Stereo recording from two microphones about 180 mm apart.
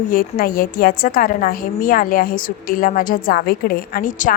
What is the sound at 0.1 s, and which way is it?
A woman's voice, 50° left (ahead or behind).